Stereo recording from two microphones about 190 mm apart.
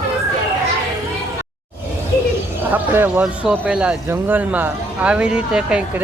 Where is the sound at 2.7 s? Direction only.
10° right (ahead or behind).